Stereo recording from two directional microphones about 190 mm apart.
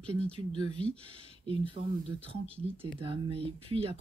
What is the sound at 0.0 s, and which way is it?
Speech, 5° left (ahead or behind).